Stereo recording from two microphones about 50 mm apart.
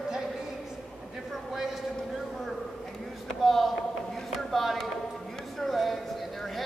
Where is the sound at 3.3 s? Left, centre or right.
Centre.